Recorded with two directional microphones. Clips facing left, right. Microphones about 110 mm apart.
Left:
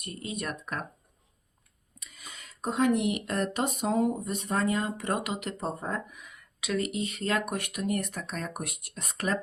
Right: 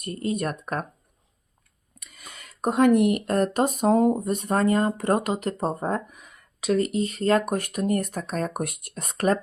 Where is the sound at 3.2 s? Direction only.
45° right (ahead or behind).